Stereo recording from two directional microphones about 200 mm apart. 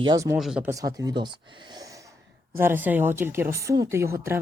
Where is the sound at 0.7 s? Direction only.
20° right (ahead or behind).